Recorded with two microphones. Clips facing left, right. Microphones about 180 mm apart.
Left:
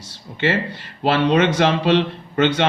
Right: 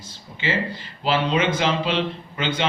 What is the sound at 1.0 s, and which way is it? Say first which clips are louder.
Speech: left 5 dB; 65° left (ahead or behind).